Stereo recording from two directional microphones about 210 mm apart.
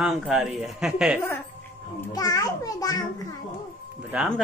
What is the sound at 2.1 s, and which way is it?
Speech, 15° left (ahead or behind).